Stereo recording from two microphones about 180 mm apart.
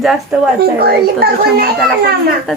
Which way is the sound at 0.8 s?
60° right (ahead or behind).